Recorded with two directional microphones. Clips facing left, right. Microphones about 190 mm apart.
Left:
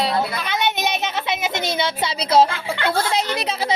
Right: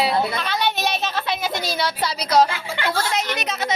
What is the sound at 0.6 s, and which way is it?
Speech, 15° left (ahead or behind).